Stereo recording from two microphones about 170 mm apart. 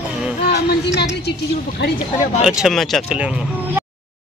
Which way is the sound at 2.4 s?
Centre (ahead or behind).